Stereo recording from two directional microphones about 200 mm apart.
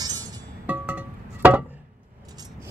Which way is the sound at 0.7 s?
5° right (ahead or behind).